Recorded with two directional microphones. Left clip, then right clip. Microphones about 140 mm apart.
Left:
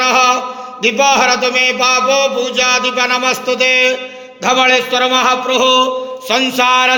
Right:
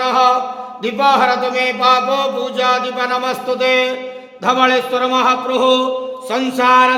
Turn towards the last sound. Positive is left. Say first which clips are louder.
# even
turn(degrees=10)  # may be behind; listen again after turning